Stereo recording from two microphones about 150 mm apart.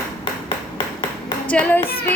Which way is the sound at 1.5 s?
10° left (ahead or behind).